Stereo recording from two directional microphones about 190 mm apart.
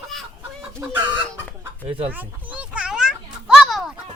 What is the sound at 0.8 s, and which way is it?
Chicken, 15° right (ahead or behind).